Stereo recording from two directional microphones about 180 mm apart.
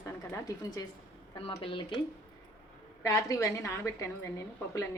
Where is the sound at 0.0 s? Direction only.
15° left (ahead or behind).